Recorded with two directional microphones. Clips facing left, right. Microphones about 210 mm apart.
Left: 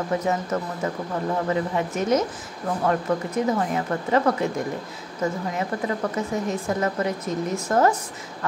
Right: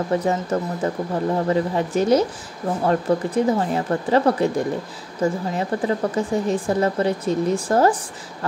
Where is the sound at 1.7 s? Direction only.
35° right (ahead or behind).